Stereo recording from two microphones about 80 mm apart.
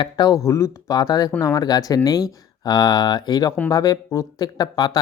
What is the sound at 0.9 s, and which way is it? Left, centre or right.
Speech, left.